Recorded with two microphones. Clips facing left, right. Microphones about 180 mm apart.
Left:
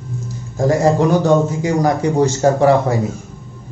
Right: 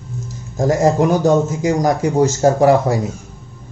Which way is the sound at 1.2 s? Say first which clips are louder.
Even; 40° right (ahead or behind).